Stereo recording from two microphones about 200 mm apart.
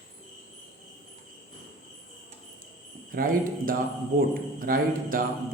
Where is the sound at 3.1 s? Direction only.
45° right (ahead or behind).